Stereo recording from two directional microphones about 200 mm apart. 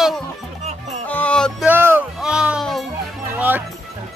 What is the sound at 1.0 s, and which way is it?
Music, 5° left (ahead or behind).